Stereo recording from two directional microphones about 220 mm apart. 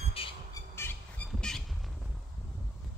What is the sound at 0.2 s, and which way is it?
Squawk, 25° left (ahead or behind).